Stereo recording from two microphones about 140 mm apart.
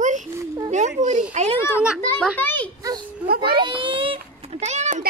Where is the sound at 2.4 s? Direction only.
10° left (ahead or behind).